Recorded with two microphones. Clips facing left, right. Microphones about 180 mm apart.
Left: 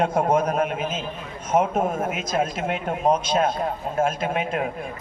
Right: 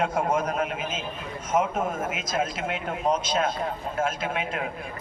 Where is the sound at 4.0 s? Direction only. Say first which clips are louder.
Left 5 dB; 40° left (ahead or behind).